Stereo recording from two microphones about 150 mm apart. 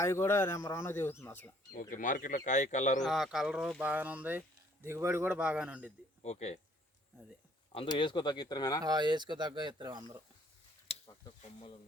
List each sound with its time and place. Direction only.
0.0 s speech: 20° left (ahead or behind)
1.7 s speech: 65° left (ahead or behind)
3.0 s speech: centre (ahead or behind)
6.2 s speech: 45° left (ahead or behind)
7.7 s speech: 35° left (ahead or behind)
8.8 s speech: 30° right (ahead or behind)
10.8 s a sound: 40° left (ahead or behind)